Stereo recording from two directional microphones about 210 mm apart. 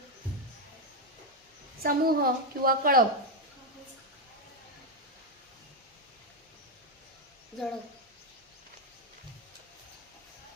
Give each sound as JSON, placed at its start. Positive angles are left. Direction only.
{"t": 1.8, "sound": "a woman's voice", "side_deg": -45}
{"t": 7.6, "sound": "speech", "side_deg": 0}